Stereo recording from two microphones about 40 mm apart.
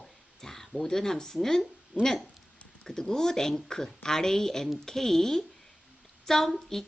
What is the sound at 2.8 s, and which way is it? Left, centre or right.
A woman's voice, centre.